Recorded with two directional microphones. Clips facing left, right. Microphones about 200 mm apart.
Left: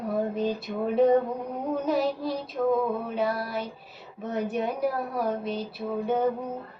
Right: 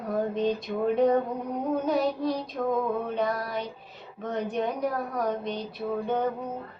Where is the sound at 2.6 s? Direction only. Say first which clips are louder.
Left 4 dB; 10° left (ahead or behind).